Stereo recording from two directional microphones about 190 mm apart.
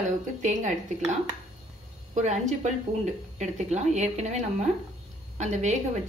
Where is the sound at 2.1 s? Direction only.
40° right (ahead or behind).